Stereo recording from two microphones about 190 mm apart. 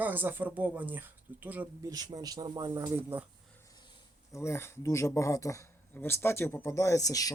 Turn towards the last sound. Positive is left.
turn(degrees=20)  # may be behind; listen again after turning